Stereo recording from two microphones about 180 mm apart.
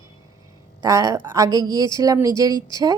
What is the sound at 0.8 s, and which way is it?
A woman's voice, 15° right (ahead or behind).